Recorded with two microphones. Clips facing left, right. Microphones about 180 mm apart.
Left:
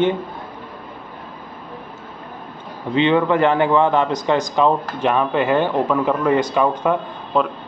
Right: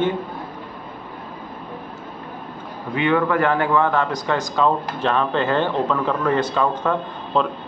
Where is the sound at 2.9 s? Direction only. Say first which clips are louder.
Left 3 dB; 25° left (ahead or behind).